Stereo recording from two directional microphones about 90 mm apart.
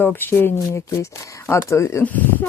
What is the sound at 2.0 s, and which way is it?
Speech, 20° left (ahead or behind).